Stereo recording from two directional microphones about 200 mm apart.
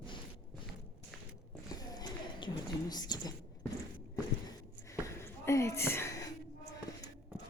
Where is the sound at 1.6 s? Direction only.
20° left (ahead or behind).